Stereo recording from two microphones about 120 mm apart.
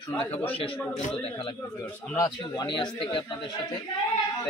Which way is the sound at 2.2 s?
40° left (ahead or behind).